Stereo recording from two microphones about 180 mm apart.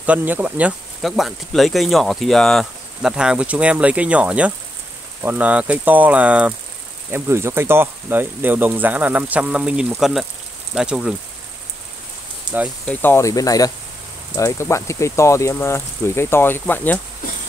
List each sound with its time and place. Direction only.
0.0 s speech: 10° right (ahead or behind)
12.8 s speech: 10° left (ahead or behind)